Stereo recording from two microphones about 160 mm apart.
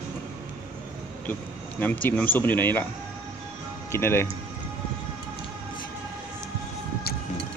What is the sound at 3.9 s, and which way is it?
Speech, 15° left (ahead or behind).